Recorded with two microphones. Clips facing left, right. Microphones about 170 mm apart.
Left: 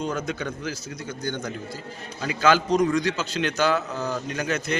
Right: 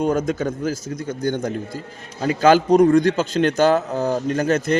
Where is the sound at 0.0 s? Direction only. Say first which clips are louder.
Right 8 dB; 50° right (ahead or behind).